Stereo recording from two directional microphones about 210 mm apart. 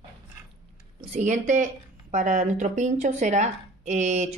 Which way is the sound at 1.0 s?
35° right (ahead or behind).